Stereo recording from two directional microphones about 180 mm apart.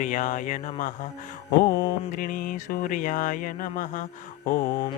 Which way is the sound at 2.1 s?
50° left (ahead or behind).